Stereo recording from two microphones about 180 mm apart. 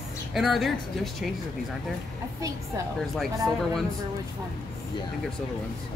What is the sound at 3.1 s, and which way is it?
Speech, centre (ahead or behind).